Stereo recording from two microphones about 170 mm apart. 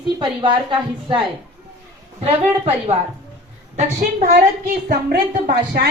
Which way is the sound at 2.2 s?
35° right (ahead or behind).